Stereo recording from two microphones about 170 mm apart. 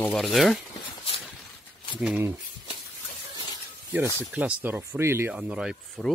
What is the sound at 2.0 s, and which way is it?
Speech, 5° right (ahead or behind).